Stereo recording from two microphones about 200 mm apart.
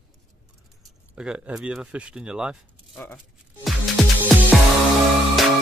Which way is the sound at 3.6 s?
Centre (ahead or behind).